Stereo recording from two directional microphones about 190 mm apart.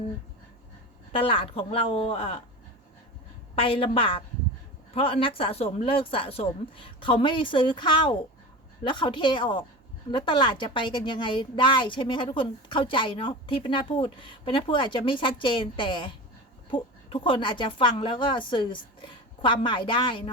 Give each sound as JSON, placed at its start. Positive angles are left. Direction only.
{"t": 1.1, "sound": "a woman's voice", "side_deg": 30}
{"t": 3.5, "sound": "a woman's voice", "side_deg": 30}